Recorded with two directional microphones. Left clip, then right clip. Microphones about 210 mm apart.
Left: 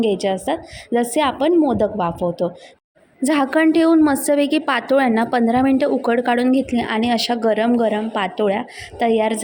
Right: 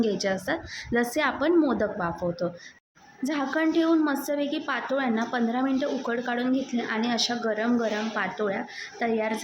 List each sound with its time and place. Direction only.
0.0 s a woman's voice: 25° left (ahead or behind)
3.2 s a woman's voice: 40° left (ahead or behind)